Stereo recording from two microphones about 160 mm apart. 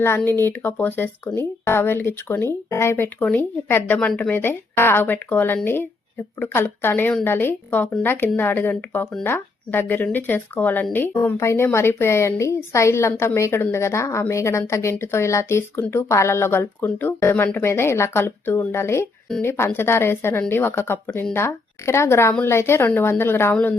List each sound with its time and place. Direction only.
0.2 s a woman's voice: 10° left (ahead or behind)